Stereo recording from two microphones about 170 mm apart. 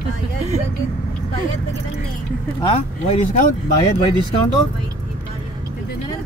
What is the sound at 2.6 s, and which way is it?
Speech, 35° left (ahead or behind).